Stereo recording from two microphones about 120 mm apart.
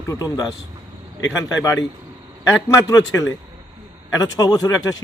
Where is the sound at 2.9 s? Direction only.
30° left (ahead or behind).